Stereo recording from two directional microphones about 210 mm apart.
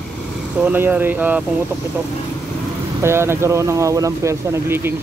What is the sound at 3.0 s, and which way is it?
Speech, 10° right (ahead or behind).